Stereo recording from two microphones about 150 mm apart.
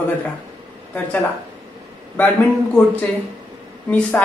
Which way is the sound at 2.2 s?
10° left (ahead or behind).